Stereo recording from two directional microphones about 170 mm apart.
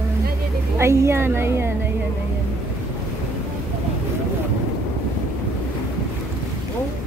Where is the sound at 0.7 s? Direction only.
15° right (ahead or behind).